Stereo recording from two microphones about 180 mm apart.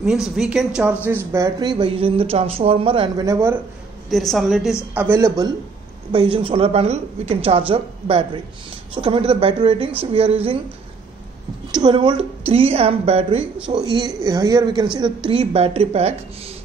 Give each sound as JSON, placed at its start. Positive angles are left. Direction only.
{"t": 0.0, "sound": "speech", "side_deg": 0}
{"t": 4.1, "sound": "speech", "side_deg": 0}
{"t": 4.9, "sound": "a man's voice", "side_deg": -15}
{"t": 6.1, "sound": "speech", "side_deg": -30}
{"t": 11.7, "sound": "speech", "side_deg": -25}